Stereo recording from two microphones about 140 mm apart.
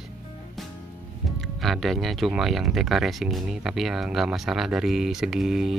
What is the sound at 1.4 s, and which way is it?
Speech, centre (ahead or behind).